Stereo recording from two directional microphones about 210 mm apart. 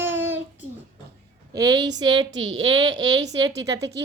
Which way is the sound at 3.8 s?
55° right (ahead or behind).